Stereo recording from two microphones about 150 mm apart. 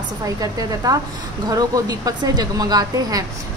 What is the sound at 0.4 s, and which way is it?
Speech, 25° right (ahead or behind).